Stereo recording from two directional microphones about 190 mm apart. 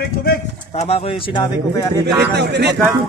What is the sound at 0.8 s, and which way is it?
Speech, 30° left (ahead or behind).